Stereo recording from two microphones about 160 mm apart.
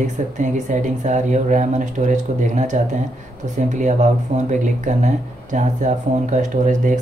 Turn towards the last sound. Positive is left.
turn(degrees=-50)  # may be behind; listen again after turning